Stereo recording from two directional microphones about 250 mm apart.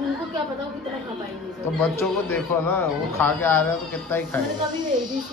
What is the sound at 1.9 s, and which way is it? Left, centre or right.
Speech, centre.